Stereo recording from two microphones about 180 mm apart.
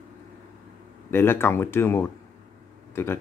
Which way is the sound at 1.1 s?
10° left (ahead or behind).